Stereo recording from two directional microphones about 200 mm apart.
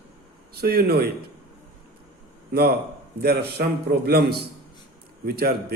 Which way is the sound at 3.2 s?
55° right (ahead or behind).